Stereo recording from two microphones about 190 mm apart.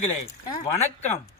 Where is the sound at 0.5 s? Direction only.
35° left (ahead or behind).